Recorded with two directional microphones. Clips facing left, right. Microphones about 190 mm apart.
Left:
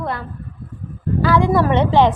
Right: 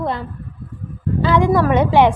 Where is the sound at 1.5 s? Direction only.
10° right (ahead or behind).